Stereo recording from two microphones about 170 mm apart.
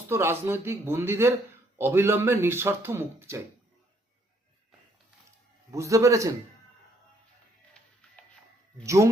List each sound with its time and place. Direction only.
0.1 s speech: 15° right (ahead or behind)
5.7 s a man's voice: 20° right (ahead or behind)
8.8 s speech: 20° right (ahead or behind)